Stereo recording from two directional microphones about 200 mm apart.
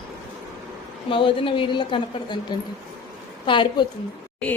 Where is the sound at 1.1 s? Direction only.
25° left (ahead or behind).